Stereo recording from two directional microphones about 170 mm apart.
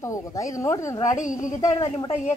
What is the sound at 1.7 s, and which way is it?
Speech, 30° left (ahead or behind).